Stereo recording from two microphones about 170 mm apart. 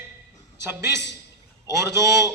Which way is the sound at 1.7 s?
20° right (ahead or behind).